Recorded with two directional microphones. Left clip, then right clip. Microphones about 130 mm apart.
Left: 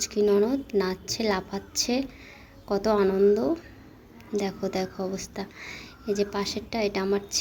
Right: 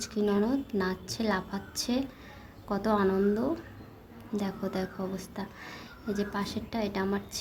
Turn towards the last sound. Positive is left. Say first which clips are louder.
# left 6 dB
turn(degrees=20)  # may be behind; listen again after turning